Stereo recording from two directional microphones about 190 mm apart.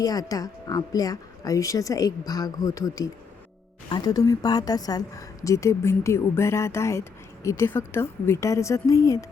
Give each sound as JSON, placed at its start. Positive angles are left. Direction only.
{"t": 0.0, "sound": "a woman's voice", "side_deg": 20}